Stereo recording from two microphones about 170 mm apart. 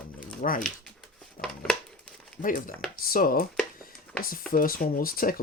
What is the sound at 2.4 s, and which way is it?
Speech, 55° left (ahead or behind).